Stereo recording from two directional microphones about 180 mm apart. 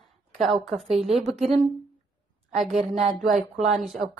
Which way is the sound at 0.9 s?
35° right (ahead or behind).